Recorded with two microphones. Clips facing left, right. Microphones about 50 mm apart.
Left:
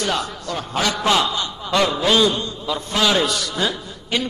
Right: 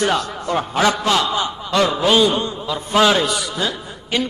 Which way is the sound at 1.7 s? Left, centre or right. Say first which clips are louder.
Right 1 dB; centre.